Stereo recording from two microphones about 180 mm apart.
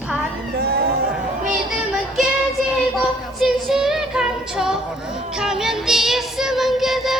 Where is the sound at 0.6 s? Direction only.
60° right (ahead or behind).